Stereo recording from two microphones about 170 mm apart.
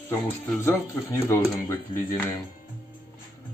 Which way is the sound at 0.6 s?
15° left (ahead or behind).